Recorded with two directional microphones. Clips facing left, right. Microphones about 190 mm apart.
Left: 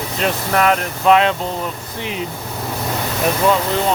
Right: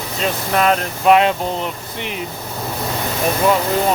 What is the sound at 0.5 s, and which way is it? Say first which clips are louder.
Speech: even; 25° right (ahead or behind).